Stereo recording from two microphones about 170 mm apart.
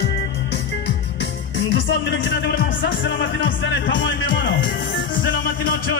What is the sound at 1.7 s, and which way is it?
Music, 90° left.